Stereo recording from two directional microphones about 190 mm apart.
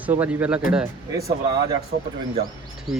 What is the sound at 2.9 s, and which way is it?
Speech, centre (ahead or behind).